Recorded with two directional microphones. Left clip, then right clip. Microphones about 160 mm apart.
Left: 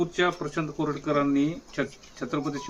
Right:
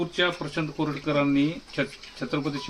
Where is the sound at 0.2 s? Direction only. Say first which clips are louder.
Right 3 dB; 90° right.